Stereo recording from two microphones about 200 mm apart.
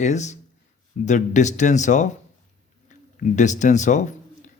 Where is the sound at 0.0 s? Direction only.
35° left (ahead or behind).